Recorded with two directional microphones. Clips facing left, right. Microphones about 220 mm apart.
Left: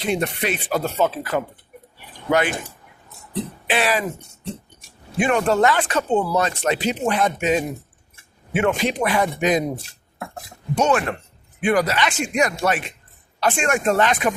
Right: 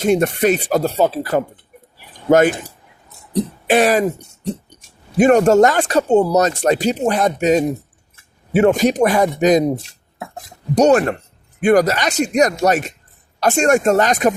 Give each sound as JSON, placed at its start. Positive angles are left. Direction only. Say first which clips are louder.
{"t": 0.0, "sound": "speech", "louder": "right 8 dB", "side_deg": -45}
{"t": 3.3, "sound": "throat clearing", "louder": "right 8 dB", "side_deg": -45}
{"t": 4.4, "sound": "speech", "louder": "right 7 dB", "side_deg": -40}
{"t": 10.8, "sound": "speech", "louder": "right 7 dB", "side_deg": -40}